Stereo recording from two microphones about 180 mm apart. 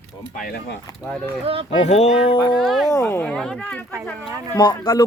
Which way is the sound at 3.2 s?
5° left (ahead or behind).